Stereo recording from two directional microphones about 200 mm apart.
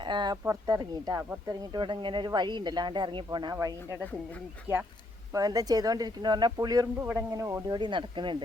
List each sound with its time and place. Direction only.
0.0 s speech: 20° right (ahead or behind)